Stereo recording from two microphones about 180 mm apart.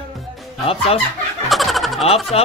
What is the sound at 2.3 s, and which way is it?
Speech, 35° left (ahead or behind).